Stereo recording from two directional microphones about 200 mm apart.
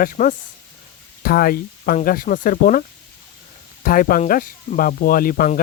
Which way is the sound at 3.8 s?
45° left (ahead or behind).